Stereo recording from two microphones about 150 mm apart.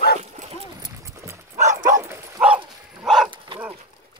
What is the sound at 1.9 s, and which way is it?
Bow-wow, 20° right (ahead or behind).